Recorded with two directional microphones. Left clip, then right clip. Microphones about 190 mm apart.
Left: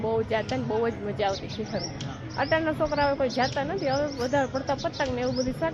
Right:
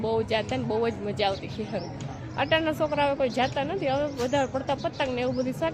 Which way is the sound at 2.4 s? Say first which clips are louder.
Even; 25° right (ahead or behind).